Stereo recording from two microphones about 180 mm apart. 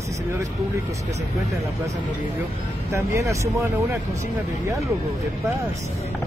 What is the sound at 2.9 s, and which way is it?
Speech, 15° right (ahead or behind).